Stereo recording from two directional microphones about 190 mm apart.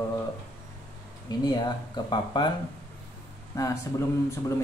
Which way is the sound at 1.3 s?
20° left (ahead or behind).